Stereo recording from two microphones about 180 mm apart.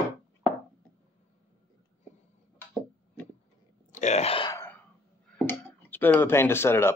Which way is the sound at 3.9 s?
40° left (ahead or behind).